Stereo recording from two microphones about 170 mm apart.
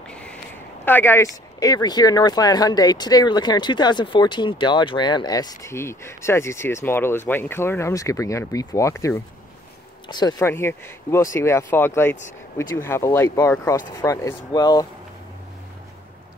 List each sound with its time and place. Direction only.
0.1 s a sound: 5° left (ahead or behind)
0.8 s speech: 10° left (ahead or behind)
10.4 s speech: 15° left (ahead or behind)